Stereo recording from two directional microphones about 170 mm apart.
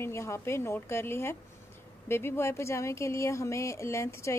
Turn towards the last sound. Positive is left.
turn(degrees=15)  # may be behind; listen again after turning